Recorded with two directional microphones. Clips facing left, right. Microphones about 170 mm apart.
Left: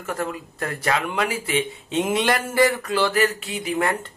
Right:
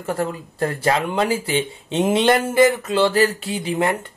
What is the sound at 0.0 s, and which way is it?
Speech, 30° right (ahead or behind).